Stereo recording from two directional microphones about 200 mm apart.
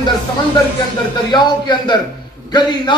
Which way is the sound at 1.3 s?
20° left (ahead or behind).